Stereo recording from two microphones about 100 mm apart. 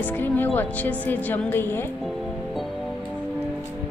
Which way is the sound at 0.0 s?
20° left (ahead or behind).